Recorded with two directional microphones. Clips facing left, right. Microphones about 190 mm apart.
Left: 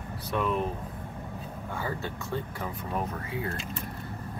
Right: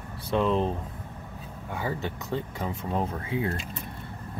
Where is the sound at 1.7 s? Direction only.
20° right (ahead or behind).